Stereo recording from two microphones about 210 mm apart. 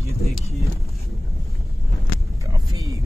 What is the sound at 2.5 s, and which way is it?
Vehicle, 15° right (ahead or behind).